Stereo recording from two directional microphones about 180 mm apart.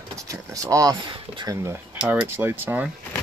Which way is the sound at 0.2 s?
20° right (ahead or behind).